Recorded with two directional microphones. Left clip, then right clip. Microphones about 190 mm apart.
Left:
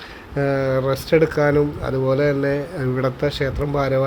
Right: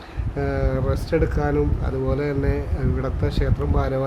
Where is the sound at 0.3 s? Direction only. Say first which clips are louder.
Left 6 dB; 15° left (ahead or behind).